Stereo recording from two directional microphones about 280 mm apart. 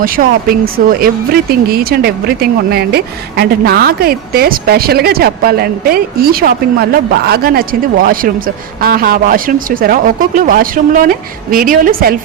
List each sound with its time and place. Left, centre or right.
0.0 s speech: right